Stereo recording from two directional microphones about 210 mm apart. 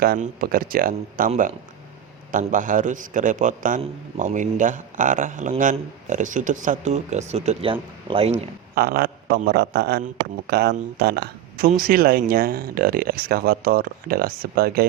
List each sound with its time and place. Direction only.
0.0 s a man's voice: 45° right (ahead or behind)
8.7 s speech: 45° right (ahead or behind)